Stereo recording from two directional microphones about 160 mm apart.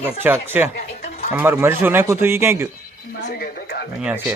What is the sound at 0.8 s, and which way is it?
Goat, 45° left (ahead or behind).